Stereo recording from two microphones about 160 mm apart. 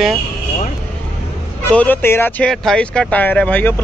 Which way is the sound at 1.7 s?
10° left (ahead or behind).